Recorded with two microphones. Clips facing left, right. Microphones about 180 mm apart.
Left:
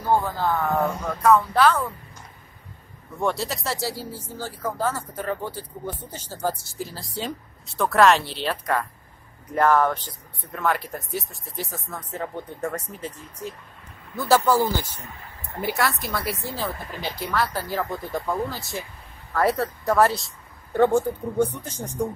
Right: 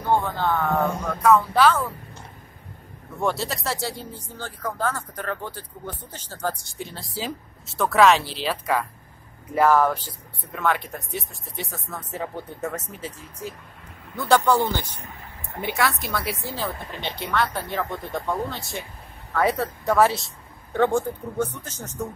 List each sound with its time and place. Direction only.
0.0 s speech: 5° left (ahead or behind)
3.2 s speech: centre (ahead or behind)